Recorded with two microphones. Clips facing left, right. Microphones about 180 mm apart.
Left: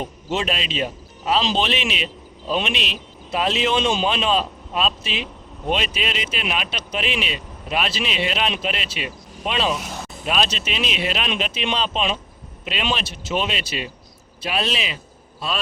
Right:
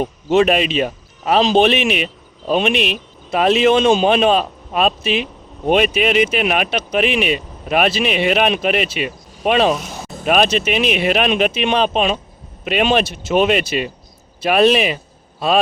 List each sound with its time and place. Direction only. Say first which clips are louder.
0.0 s speech: right 11 dB; 55° right (ahead or behind)